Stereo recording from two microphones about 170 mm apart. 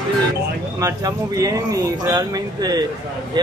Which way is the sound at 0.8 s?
20° right (ahead or behind).